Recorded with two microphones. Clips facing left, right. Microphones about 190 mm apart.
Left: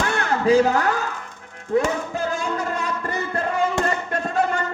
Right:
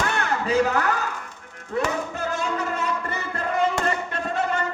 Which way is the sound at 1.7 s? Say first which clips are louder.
Left 4 dB; 40° left (ahead or behind).